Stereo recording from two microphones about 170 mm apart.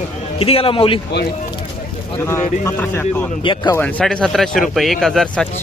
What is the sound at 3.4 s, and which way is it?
Speech, 30° left (ahead or behind).